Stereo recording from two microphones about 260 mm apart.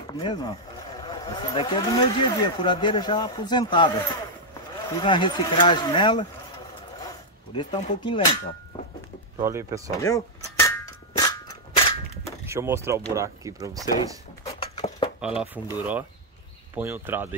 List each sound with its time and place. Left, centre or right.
0.0 s speech: centre
4.9 s speech: centre
7.0 s zipper: centre
8.0 s speech: centre
8.7 s music: centre
9.4 s speech: centre
9.9 s a sound: centre
11.1 s cap gun: centre
12.4 s speech: centre
14.4 s a sound: centre
15.1 s speech: centre